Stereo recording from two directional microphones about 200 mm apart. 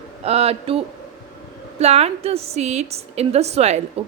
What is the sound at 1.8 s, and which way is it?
A woman's voice, 30° right (ahead or behind).